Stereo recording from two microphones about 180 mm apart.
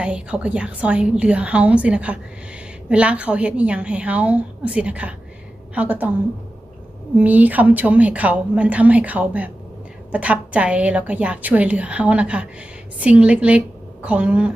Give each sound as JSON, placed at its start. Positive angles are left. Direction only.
{"t": 0.0, "sound": "a woman's voice", "side_deg": -5}
{"t": 7.2, "sound": "a woman's voice", "side_deg": -10}